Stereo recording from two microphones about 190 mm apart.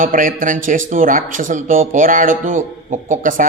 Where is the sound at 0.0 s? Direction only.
45° right (ahead or behind).